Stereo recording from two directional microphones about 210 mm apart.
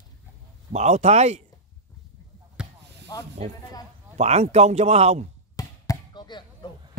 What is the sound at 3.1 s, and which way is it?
Speech, 20° left (ahead or behind).